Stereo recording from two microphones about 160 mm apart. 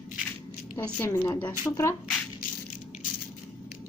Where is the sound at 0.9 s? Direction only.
10° left (ahead or behind).